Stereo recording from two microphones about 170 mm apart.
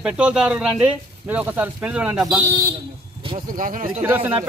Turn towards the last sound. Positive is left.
turn(degrees=-10)  # may be behind; listen again after turning